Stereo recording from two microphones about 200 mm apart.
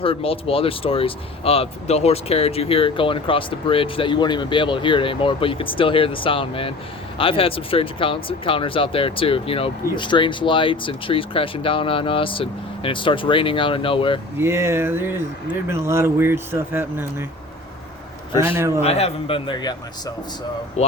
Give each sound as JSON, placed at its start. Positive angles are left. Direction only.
{"t": 0.0, "sound": "speech", "side_deg": 30}
{"t": 14.3, "sound": "speech", "side_deg": -15}
{"t": 18.3, "sound": "speech", "side_deg": -15}
{"t": 18.8, "sound": "speech", "side_deg": 30}
{"t": 20.8, "sound": "speech", "side_deg": 35}